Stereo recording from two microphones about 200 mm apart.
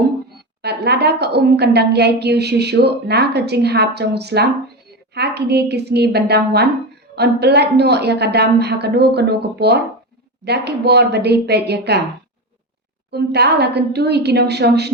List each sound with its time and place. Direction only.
0.6 s a woman's voice: 55° right (ahead or behind)
13.1 s a woman's voice: 55° right (ahead or behind)